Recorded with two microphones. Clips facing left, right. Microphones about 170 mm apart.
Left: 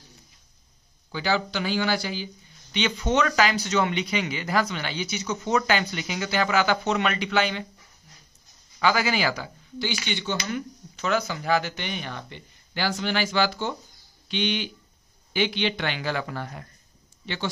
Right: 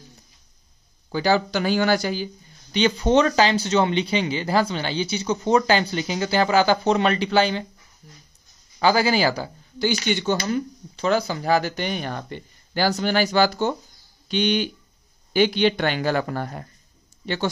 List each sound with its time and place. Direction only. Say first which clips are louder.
1.1 s speech: right 6 dB; 40° right (ahead or behind)
8.7 s speech: right 4 dB; 35° right (ahead or behind)